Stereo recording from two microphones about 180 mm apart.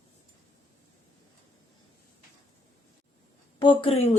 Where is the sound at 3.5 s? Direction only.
30° left (ahead or behind).